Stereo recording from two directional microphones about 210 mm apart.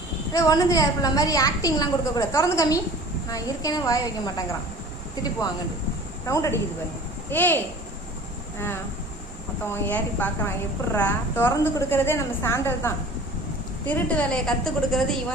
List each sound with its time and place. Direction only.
0.3 s a woman's voice: 15° left (ahead or behind)
6.2 s a woman's voice: 15° left (ahead or behind)